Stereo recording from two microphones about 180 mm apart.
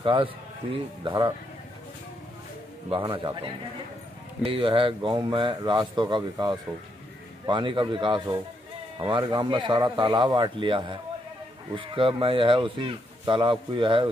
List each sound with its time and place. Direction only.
0.0 s speech: 30° right (ahead or behind)
2.9 s speech: 25° right (ahead or behind)